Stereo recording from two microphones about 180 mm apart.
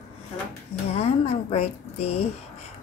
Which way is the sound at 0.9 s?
35° left (ahead or behind).